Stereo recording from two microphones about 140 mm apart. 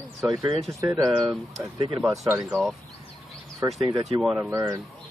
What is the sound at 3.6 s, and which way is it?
Speech, 20° right (ahead or behind).